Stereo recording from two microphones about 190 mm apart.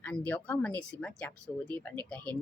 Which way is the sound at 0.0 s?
10° left (ahead or behind).